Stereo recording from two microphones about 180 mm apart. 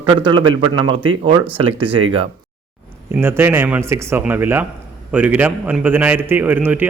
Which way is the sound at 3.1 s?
10° right (ahead or behind).